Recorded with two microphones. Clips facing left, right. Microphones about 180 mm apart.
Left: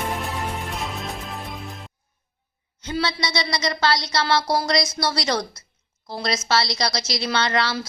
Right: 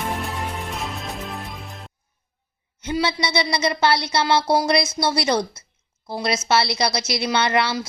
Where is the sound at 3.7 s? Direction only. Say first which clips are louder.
Right 2 dB; 20° right (ahead or behind).